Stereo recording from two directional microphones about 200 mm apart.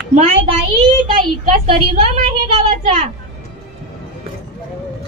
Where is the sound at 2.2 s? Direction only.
35° right (ahead or behind).